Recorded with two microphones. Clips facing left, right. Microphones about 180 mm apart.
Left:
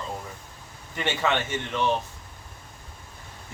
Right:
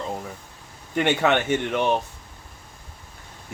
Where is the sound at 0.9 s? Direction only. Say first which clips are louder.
Right 6 dB; 60° right (ahead or behind).